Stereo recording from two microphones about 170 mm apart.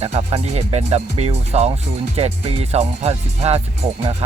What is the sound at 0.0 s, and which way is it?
Speech, 40° right (ahead or behind).